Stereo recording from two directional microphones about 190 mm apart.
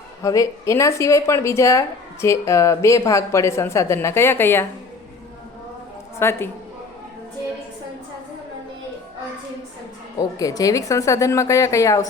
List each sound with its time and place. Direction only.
0.2 s speech: 15° left (ahead or behind)
6.1 s speech: 15° left (ahead or behind)
10.2 s speech: 20° left (ahead or behind)